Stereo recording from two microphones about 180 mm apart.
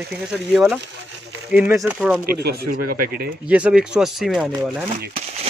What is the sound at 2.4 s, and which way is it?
Speech, 55° right (ahead or behind).